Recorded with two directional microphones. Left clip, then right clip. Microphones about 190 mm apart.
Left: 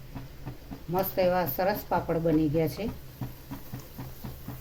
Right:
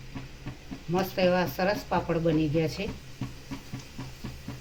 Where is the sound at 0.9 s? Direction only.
60° left (ahead or behind).